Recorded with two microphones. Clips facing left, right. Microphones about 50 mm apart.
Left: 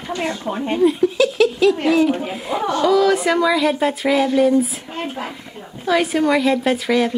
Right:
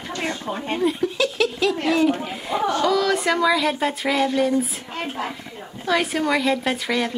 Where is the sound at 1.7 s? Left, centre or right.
Centre.